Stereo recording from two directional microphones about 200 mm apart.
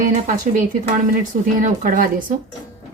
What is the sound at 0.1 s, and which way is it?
A woman's voice, 40° right (ahead or behind).